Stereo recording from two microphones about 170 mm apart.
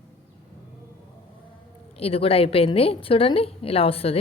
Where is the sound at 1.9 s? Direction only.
35° left (ahead or behind).